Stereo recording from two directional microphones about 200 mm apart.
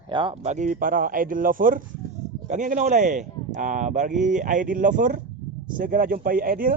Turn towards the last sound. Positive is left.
turn(degrees=-45)  # may be behind; listen again after turning